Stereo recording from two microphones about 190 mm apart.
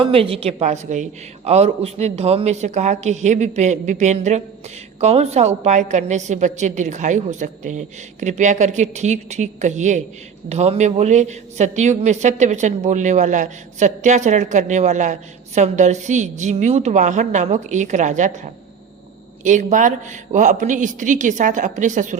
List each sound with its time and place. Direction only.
0.0 s a man's voice: 30° right (ahead or behind)
19.5 s a man's voice: 40° right (ahead or behind)